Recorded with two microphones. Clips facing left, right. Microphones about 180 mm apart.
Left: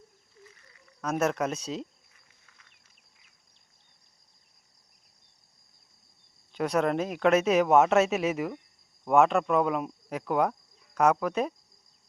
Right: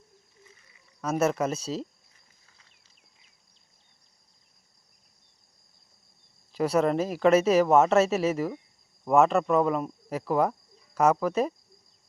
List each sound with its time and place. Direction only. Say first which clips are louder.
1.0 s speech: right 2 dB; 5° right (ahead or behind)
2.5 s a sound: even; 30° right (ahead or behind)
6.5 s speech: right 2 dB; centre (ahead or behind)